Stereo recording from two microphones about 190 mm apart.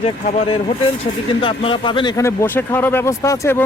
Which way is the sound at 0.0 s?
35° left (ahead or behind).